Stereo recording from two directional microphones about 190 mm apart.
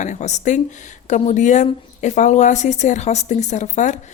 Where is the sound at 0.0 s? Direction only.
40° left (ahead or behind).